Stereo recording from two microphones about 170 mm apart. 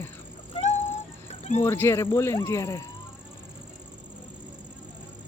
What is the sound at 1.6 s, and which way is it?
Speech, 15° left (ahead or behind).